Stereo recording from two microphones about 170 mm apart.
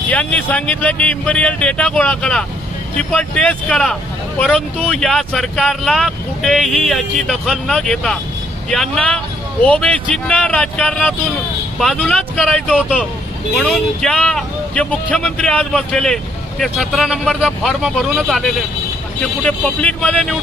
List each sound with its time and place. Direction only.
0.1 s speech: 10° left (ahead or behind)